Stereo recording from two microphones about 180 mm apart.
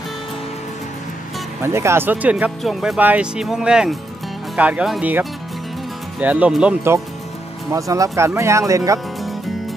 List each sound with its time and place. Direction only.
1.6 s speech: 15° right (ahead or behind)